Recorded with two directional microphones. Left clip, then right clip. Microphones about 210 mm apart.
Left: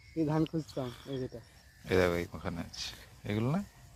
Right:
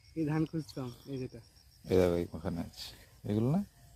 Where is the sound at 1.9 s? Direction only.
45° right (ahead or behind).